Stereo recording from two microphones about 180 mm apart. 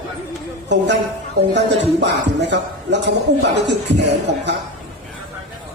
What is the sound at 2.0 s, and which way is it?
Speech, 75° right (ahead or behind).